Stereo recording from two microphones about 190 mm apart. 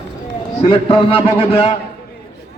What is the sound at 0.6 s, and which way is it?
Speech, 30° left (ahead or behind).